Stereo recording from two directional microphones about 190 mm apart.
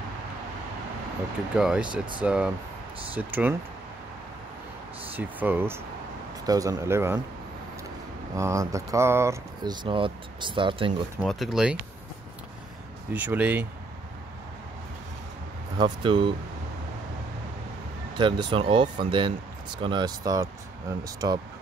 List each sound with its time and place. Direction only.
1.6 s speech: 5° right (ahead or behind)
5.1 s speech: 10° right (ahead or behind)
8.4 s speech: 15° right (ahead or behind)
11.2 s speech: centre (ahead or behind)
13.1 s speech: 10° right (ahead or behind)
15.8 s speech: 25° right (ahead or behind)
18.1 s speech: 25° right (ahead or behind)